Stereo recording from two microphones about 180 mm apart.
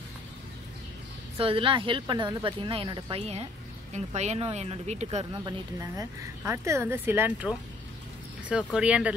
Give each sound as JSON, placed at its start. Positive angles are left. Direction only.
{"t": 1.4, "sound": "speech", "side_deg": -30}
{"t": 5.3, "sound": "speech", "side_deg": -20}
{"t": 8.7, "sound": "speech", "side_deg": -5}